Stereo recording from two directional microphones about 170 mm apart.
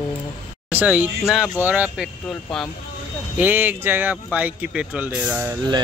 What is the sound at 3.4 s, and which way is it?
Speech, 10° right (ahead or behind).